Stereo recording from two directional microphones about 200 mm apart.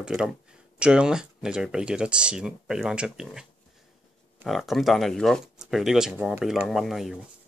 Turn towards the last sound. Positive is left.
turn(degrees=0)  # may be behind; listen again after turning